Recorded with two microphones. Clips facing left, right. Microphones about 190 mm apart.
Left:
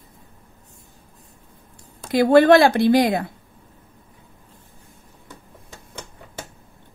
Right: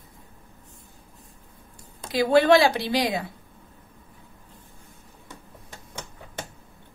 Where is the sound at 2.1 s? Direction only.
50° left (ahead or behind).